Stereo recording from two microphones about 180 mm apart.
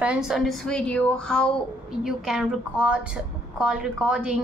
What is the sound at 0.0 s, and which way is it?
A woman's voice, 5° right (ahead or behind).